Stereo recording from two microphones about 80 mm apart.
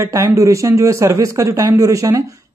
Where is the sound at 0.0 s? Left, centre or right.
Right.